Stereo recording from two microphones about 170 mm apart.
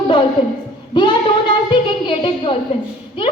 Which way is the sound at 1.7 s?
30° left (ahead or behind).